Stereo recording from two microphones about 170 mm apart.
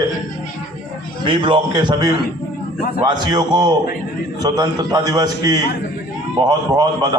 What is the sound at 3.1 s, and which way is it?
A man's voice, 25° right (ahead or behind).